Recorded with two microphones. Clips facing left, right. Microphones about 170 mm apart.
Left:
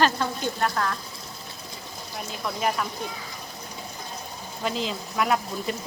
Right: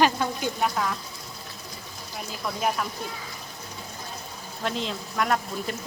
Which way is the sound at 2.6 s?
Centre (ahead or behind).